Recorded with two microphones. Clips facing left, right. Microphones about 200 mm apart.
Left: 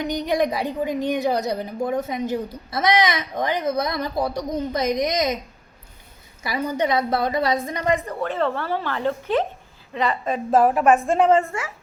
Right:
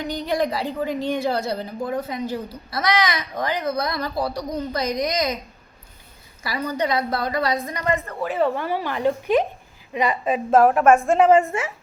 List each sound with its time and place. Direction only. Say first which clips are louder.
0.0 s a woman's voice: left 2 dB; 20° left (ahead or behind)
6.4 s a woman's voice: left 1 dB; 20° left (ahead or behind)
8.2 s a woman's voice: right 2 dB; 10° right (ahead or behind)